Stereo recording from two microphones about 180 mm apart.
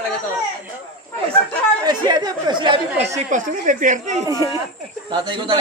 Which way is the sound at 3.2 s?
45° right (ahead or behind).